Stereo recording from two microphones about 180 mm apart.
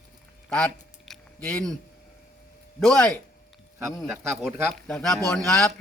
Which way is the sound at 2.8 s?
5° left (ahead or behind).